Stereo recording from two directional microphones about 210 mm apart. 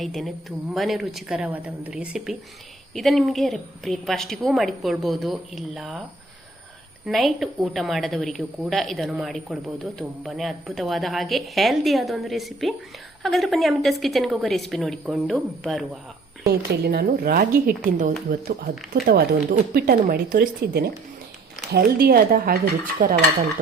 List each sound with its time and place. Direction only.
0.0 s a woman's voice: centre (ahead or behind)
7.0 s a woman's voice: centre (ahead or behind)
16.5 s speech: 50° right (ahead or behind)